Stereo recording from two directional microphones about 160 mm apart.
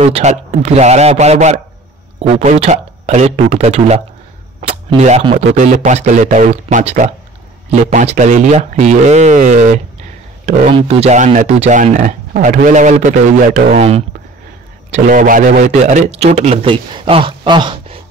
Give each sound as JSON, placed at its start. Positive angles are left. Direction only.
{"t": 0.0, "sound": "a man's voice", "side_deg": -45}
{"t": 4.6, "sound": "a sound", "side_deg": -45}
{"t": 5.2, "sound": "a man's voice", "side_deg": -40}
{"t": 10.7, "sound": "a man's voice", "side_deg": -40}
{"t": 14.9, "sound": "a man's voice", "side_deg": -55}